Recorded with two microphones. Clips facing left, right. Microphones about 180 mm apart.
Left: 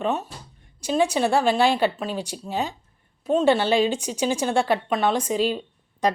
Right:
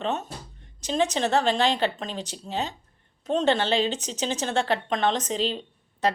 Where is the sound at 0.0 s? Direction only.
10° left (ahead or behind).